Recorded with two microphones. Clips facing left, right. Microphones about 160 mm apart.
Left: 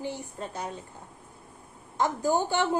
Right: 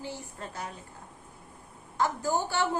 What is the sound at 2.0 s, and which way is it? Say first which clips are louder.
Speech: left 3 dB; 15° left (ahead or behind).